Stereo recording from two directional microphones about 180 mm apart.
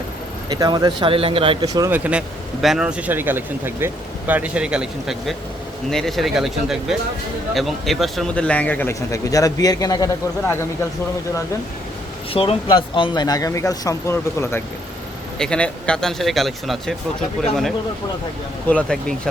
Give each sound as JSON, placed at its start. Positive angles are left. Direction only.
{"t": 0.5, "sound": "speech", "side_deg": -20}
{"t": 1.9, "sound": "a man's voice", "side_deg": -5}
{"t": 12.3, "sound": "speech", "side_deg": 30}
{"t": 18.7, "sound": "speech", "side_deg": 5}